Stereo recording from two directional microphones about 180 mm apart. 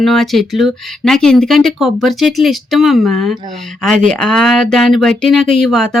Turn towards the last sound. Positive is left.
turn(degrees=0)  # may be behind; listen again after turning